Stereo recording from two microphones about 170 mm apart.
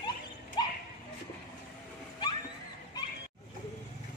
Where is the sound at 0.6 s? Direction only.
25° left (ahead or behind).